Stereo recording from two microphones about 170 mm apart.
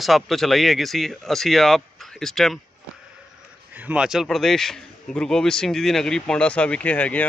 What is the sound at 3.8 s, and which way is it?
A man's voice, 5° right (ahead or behind).